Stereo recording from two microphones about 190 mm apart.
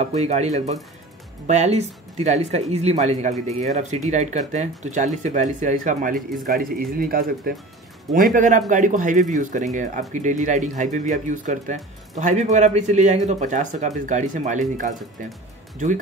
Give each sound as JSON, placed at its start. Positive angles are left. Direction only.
{"t": 0.0, "sound": "speech", "side_deg": -35}
{"t": 1.5, "sound": "speech", "side_deg": -35}